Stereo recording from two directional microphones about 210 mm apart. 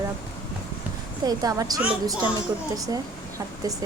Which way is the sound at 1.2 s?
20° right (ahead or behind).